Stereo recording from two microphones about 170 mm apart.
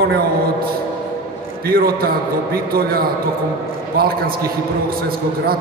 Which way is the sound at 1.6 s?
60° right (ahead or behind).